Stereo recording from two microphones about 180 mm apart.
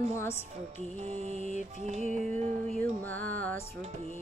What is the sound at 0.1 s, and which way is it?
Music, 15° left (ahead or behind).